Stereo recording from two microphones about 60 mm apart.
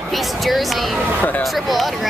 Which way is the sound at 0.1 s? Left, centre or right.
Centre.